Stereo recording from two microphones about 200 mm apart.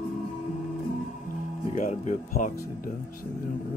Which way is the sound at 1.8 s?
40° left (ahead or behind).